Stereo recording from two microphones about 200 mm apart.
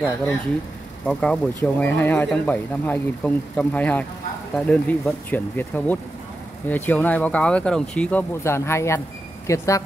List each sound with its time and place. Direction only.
1.0 s speech: 5° left (ahead or behind)